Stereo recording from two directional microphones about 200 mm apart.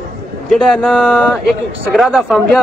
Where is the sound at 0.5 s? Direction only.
5° left (ahead or behind).